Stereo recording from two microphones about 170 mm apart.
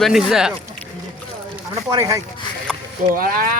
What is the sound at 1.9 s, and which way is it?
Speech, 20° right (ahead or behind).